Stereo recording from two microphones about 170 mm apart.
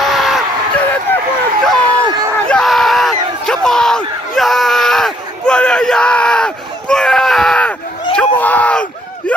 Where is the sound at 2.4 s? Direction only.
5° left (ahead or behind).